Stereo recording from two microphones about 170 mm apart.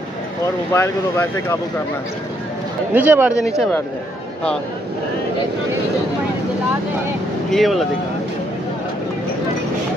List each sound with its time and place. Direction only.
0.7 s speech: 15° left (ahead or behind)
2.9 s speech: 10° right (ahead or behind)
7.4 s speech: centre (ahead or behind)